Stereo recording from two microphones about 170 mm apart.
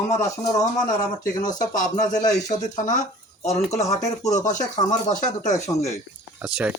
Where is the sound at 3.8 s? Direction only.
20° left (ahead or behind).